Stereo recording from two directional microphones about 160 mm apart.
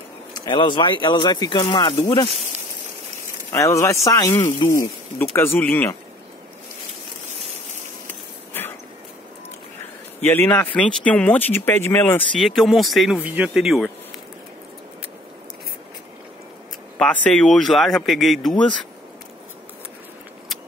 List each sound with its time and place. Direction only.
0.5 s speech: 30° left (ahead or behind)
3.5 s speech: 20° left (ahead or behind)
8.1 s a sound: 15° left (ahead or behind)
10.2 s speech: 10° left (ahead or behind)
12.4 s speech: centre (ahead or behind)
17.0 s speech: 5° left (ahead or behind)